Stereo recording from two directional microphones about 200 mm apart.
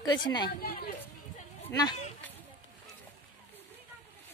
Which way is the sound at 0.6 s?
50° left (ahead or behind).